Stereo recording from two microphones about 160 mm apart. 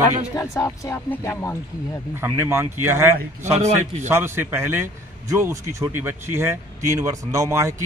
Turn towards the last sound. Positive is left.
turn(degrees=-20)  # may be behind; listen again after turning